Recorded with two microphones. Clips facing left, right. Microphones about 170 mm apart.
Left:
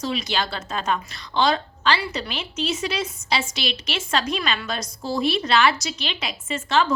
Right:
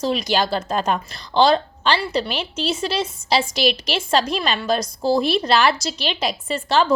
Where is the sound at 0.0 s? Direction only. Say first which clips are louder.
Right 5 dB; 40° right (ahead or behind).